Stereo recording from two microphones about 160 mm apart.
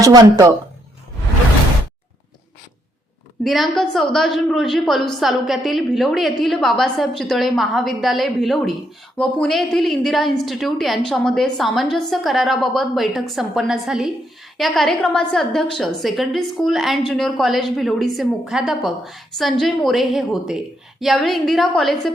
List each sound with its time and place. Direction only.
0.0 s speech: 25° right (ahead or behind)
3.4 s a woman's voice: centre (ahead or behind)